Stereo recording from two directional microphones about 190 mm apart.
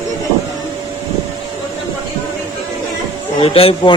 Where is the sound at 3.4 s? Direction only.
30° left (ahead or behind).